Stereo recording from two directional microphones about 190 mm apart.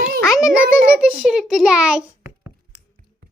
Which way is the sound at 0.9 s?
5° right (ahead or behind).